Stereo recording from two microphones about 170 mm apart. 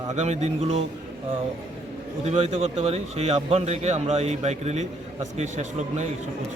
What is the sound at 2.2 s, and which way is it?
Speech, 40° right (ahead or behind).